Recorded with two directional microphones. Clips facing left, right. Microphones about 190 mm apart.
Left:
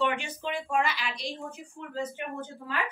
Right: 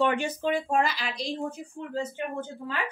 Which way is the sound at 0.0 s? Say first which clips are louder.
Right 5 dB; 45° right (ahead or behind).